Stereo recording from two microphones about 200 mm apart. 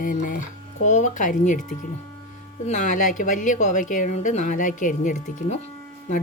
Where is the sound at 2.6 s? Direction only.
35° left (ahead or behind).